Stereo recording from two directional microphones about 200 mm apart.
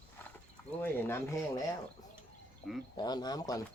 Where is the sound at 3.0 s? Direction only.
20° left (ahead or behind).